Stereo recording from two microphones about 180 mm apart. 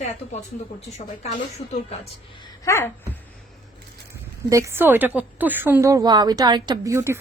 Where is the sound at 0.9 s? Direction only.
35° left (ahead or behind).